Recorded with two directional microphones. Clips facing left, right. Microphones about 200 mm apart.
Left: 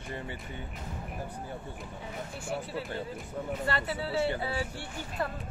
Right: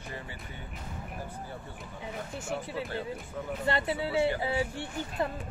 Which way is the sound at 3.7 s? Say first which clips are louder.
Right 6 dB; 25° right (ahead or behind).